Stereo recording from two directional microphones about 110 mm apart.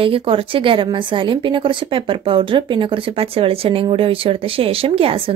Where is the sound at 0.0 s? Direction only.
55° right (ahead or behind).